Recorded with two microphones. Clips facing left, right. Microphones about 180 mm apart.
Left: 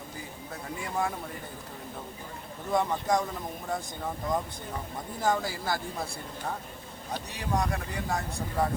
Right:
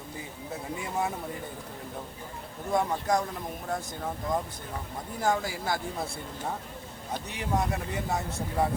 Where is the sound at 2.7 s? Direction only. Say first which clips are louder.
Even; 5° right (ahead or behind).